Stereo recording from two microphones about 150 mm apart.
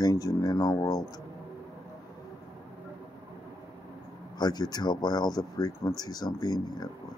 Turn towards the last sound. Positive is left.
turn(degrees=25)  # may be behind; listen again after turning